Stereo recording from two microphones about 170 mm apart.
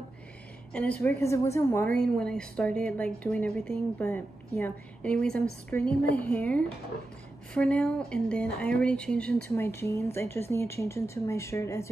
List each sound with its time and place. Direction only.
0.7 s a woman's voice: 10° left (ahead or behind)